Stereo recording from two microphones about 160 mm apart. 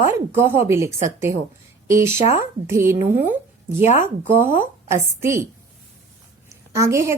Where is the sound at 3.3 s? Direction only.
15° right (ahead or behind).